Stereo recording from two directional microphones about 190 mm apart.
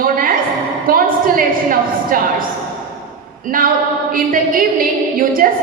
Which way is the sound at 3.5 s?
50° right (ahead or behind).